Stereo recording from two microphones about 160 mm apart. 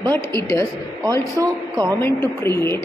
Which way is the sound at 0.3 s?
20° left (ahead or behind).